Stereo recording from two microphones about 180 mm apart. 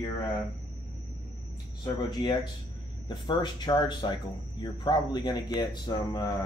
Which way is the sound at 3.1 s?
25° left (ahead or behind).